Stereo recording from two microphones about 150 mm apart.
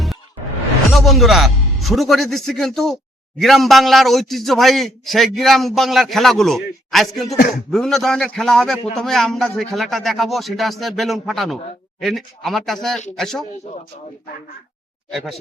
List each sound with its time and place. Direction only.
0.9 s a man's voice: centre (ahead or behind)
15.1 s a man's voice: centre (ahead or behind)